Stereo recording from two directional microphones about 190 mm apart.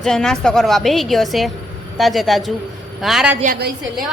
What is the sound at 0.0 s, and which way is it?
A woman's voice, 5° left (ahead or behind).